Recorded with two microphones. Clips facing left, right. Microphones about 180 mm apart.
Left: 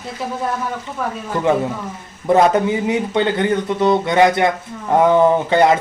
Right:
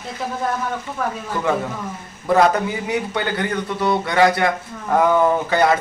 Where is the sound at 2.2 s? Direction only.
25° left (ahead or behind).